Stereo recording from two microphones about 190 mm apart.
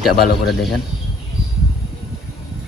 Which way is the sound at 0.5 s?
Centre (ahead or behind).